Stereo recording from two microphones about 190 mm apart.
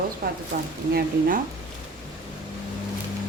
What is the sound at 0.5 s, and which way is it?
Speech, 45° right (ahead or behind).